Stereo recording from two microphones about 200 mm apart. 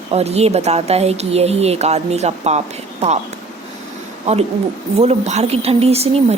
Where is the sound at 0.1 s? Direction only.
30° right (ahead or behind).